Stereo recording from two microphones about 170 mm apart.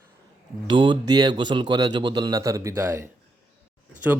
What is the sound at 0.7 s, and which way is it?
A man's voice, 25° right (ahead or behind).